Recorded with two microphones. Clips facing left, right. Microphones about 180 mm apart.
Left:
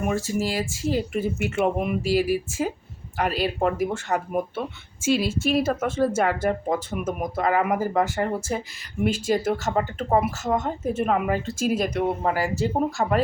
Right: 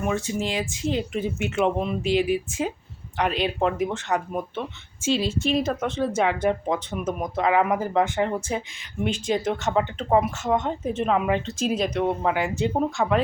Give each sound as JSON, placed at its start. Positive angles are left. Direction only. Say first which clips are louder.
{"t": 0.1, "sound": "a woman's voice", "louder": "left 1 dB", "side_deg": 5}
{"t": 11.7, "sound": "speech", "louder": "even", "side_deg": 50}
{"t": 12.2, "sound": "speech", "louder": "even", "side_deg": 5}